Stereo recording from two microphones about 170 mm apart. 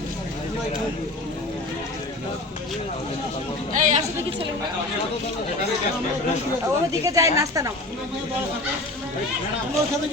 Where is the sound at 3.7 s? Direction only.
45° right (ahead or behind).